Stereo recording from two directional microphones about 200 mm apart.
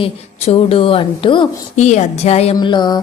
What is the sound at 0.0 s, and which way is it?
A woman's voice, 30° left (ahead or behind).